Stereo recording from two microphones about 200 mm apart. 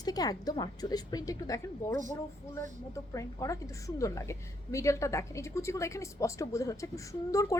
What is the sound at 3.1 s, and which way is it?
A woman's voice, 15° left (ahead or behind).